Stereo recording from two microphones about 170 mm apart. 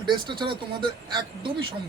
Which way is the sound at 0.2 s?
25° right (ahead or behind).